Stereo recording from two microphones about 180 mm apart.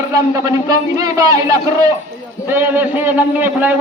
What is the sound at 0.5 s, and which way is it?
A man's voice, 20° right (ahead or behind).